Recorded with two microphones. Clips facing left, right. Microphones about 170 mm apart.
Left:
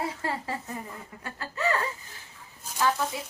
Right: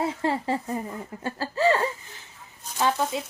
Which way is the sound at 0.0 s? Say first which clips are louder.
Right 6 dB; 25° right (ahead or behind).